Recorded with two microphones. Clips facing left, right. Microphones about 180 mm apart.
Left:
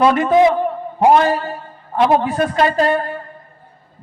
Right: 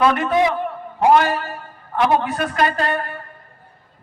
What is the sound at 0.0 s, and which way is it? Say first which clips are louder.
A man's voice: left 5 dB; 25° left (ahead or behind).